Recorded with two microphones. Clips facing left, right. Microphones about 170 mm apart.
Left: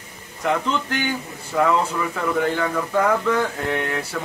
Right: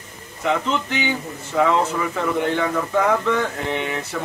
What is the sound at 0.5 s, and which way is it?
Speech, 5° left (ahead or behind).